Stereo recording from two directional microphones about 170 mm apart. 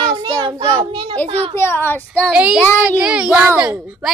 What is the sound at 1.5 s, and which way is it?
Speech, 15° left (ahead or behind).